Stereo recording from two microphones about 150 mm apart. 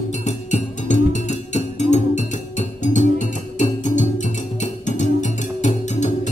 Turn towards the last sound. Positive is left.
turn(degrees=50)  # may be behind; listen again after turning